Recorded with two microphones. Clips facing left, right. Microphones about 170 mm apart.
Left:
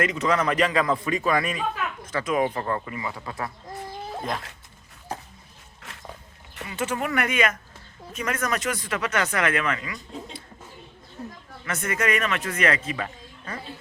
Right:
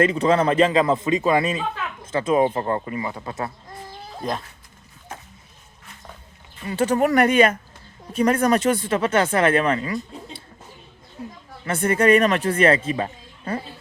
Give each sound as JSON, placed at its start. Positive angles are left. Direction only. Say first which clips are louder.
{"t": 0.0, "sound": "a man's voice", "louder": "right 5 dB", "side_deg": -30}
{"t": 5.1, "sound": "a sound", "louder": "left 4 dB", "side_deg": 35}
{"t": 5.8, "sound": "dog", "louder": "left 3 dB", "side_deg": 90}
{"t": 6.7, "sound": "speech", "louder": "right 8 dB", "side_deg": -35}
{"t": 11.2, "sound": "a sound", "louder": "right 2 dB", "side_deg": -10}
{"t": 11.6, "sound": "speech", "louder": "right 8 dB", "side_deg": -30}